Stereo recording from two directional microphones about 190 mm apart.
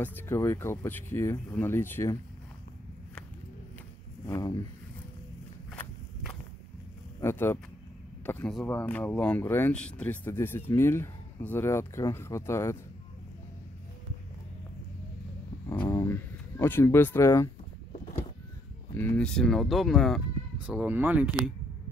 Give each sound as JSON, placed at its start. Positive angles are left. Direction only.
{"t": 0.0, "sound": "speech", "side_deg": 10}
{"t": 4.3, "sound": "speech", "side_deg": 20}
{"t": 7.2, "sound": "speech", "side_deg": 10}
{"t": 15.9, "sound": "music", "side_deg": 15}
{"t": 18.9, "sound": "speech", "side_deg": 10}